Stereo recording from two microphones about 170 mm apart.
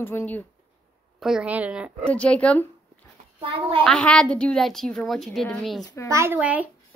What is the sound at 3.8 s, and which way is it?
A woman's voice, 5° left (ahead or behind).